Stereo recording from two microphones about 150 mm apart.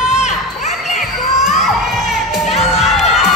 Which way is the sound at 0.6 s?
50° left (ahead or behind).